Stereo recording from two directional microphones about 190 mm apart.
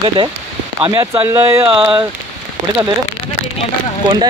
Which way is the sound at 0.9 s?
15° right (ahead or behind).